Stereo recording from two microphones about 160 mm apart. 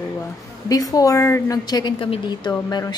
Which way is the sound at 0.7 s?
20° left (ahead or behind).